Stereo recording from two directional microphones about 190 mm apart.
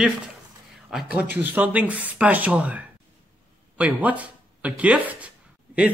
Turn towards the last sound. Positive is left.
turn(degrees=-5)  # may be behind; listen again after turning